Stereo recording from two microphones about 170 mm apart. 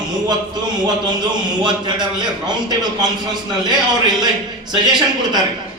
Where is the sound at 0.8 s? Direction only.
25° right (ahead or behind).